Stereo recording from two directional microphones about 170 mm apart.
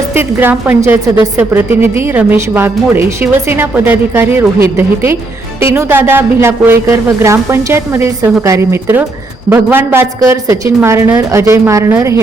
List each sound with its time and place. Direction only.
0.2 s speech: 10° right (ahead or behind)